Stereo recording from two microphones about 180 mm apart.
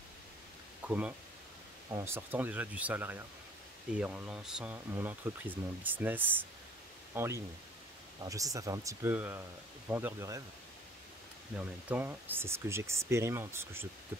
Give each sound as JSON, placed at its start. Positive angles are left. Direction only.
{"t": 0.8, "sound": "speech", "side_deg": -10}
{"t": 11.5, "sound": "speech", "side_deg": -10}